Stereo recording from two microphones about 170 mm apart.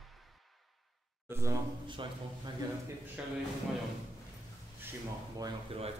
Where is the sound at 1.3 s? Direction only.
15° right (ahead or behind).